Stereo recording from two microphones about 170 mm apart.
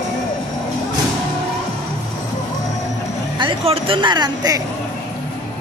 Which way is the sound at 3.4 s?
30° right (ahead or behind).